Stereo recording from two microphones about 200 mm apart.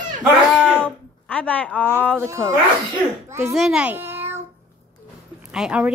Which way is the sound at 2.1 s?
15° right (ahead or behind).